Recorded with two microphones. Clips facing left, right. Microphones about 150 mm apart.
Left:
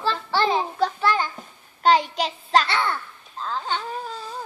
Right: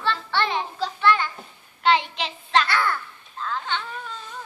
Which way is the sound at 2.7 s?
25° left (ahead or behind).